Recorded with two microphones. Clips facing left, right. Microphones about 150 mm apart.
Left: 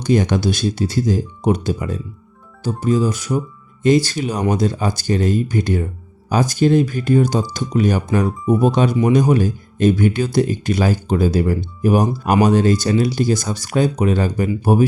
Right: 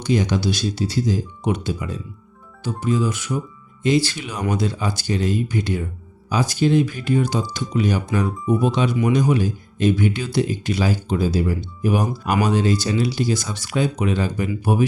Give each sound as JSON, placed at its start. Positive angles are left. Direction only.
{"t": 0.0, "sound": "speech", "side_deg": 50}